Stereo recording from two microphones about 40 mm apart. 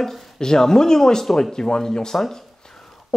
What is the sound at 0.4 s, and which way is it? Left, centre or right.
Speech, centre.